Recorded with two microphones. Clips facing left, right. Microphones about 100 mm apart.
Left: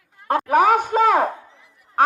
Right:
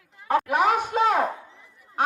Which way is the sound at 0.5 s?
55° left (ahead or behind).